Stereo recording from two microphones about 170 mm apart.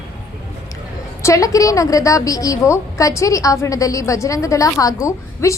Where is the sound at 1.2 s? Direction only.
20° left (ahead or behind).